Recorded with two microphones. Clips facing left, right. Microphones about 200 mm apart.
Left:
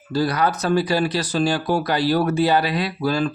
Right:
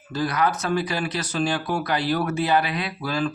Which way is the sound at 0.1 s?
35° left (ahead or behind).